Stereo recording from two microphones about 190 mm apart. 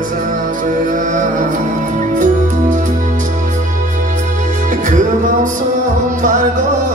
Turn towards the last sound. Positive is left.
turn(degrees=-40)  # may be behind; listen again after turning